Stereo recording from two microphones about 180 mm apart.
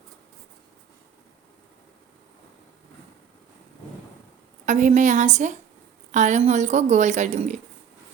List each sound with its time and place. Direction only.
4.6 s a woman's voice: 45° right (ahead or behind)